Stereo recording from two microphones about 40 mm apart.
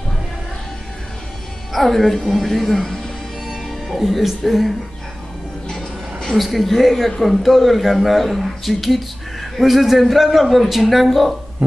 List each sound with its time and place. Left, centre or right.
1.7 s speech: centre
6.3 s speech: centre